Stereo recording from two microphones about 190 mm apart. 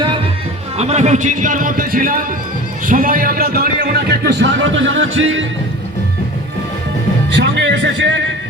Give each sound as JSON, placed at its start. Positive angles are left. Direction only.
{"t": 0.8, "sound": "a man's voice", "side_deg": -35}
{"t": 7.3, "sound": "speech", "side_deg": -65}